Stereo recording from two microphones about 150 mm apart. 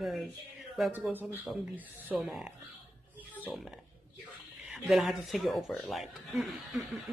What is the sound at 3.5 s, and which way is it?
Speech, 10° right (ahead or behind).